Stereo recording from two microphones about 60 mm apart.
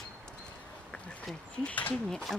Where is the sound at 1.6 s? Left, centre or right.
Left.